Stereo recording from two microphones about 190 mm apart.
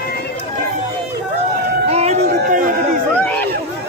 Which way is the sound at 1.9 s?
35° right (ahead or behind).